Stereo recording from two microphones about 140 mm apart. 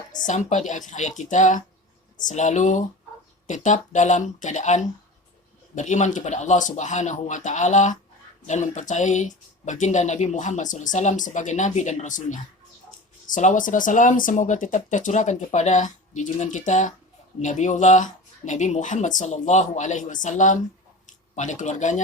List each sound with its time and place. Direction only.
0.2 s speech: 60° left (ahead or behind)